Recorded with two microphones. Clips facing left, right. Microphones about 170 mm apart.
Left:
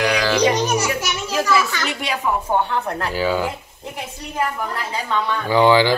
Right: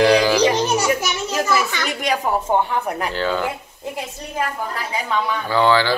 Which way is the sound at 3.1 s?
10° left (ahead or behind).